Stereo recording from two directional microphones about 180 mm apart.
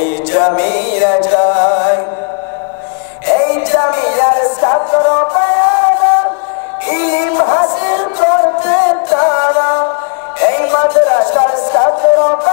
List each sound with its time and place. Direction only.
0.3 s music: 20° left (ahead or behind)
3.3 s music: 15° left (ahead or behind)